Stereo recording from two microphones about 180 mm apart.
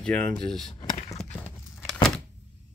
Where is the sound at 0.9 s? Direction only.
40° left (ahead or behind).